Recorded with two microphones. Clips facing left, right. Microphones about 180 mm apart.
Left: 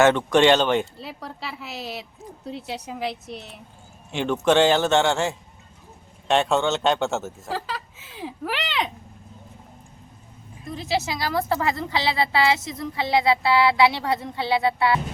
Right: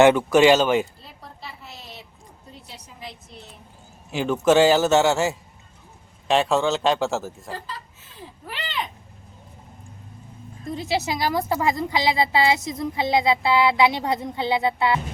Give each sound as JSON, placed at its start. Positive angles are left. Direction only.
{"t": 0.0, "sound": "a man's voice", "side_deg": -10}
{"t": 0.9, "sound": "a sound", "side_deg": 80}
{"t": 2.5, "sound": "a woman's voice", "side_deg": 80}
{"t": 4.1, "sound": "a man's voice", "side_deg": -5}
{"t": 7.5, "sound": "speech", "side_deg": 85}
{"t": 10.7, "sound": "a woman's voice", "side_deg": -20}